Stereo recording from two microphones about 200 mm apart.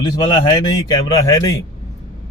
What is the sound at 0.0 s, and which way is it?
Speech, 20° left (ahead or behind).